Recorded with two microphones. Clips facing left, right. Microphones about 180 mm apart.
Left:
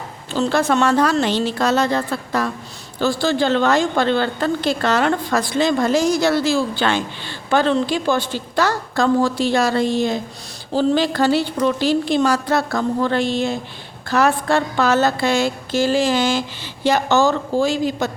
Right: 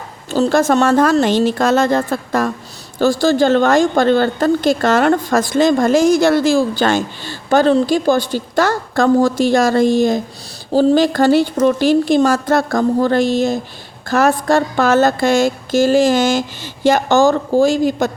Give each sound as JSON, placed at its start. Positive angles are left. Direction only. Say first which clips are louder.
{"t": 0.3, "sound": "a woman's voice", "louder": "right 5 dB", "side_deg": -45}